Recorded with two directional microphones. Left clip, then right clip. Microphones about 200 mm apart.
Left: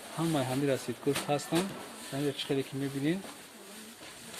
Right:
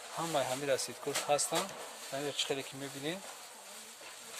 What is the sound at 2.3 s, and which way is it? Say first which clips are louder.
Speech: left 2 dB; 30° right (ahead or behind).